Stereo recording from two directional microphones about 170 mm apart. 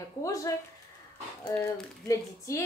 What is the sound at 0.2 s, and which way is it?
Speech, 20° left (ahead or behind).